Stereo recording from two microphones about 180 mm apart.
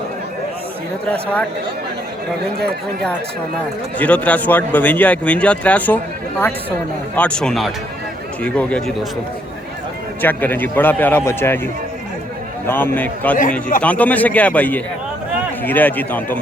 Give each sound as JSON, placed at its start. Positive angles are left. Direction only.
{"t": 1.1, "sound": "a man's voice", "side_deg": 5}
{"t": 3.9, "sound": "a man's voice", "side_deg": 10}
{"t": 7.2, "sound": "a man's voice", "side_deg": 5}
{"t": 10.2, "sound": "a man's voice", "side_deg": 10}
{"t": 13.3, "sound": "a man's voice", "side_deg": 45}
{"t": 13.8, "sound": "a man's voice", "side_deg": 10}